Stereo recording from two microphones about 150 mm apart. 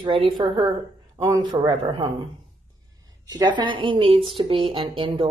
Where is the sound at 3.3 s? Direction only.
30° right (ahead or behind).